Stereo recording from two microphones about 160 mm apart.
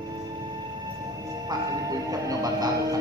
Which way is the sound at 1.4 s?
25° right (ahead or behind).